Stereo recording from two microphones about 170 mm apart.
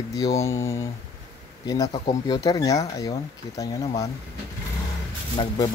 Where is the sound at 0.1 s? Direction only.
20° left (ahead or behind).